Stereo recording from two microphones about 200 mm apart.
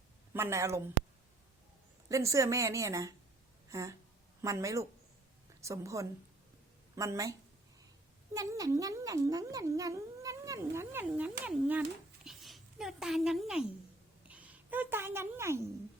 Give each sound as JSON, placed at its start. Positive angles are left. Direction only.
{"t": 0.3, "sound": "a woman's voice", "side_deg": -15}
{"t": 2.0, "sound": "a woman's voice", "side_deg": -15}